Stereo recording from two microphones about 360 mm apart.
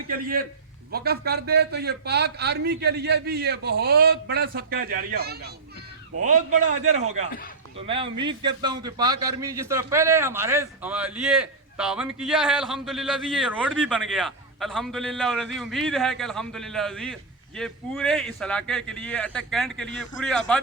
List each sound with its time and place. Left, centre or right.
0.1 s a man's voice: right
6.5 s a man's voice: centre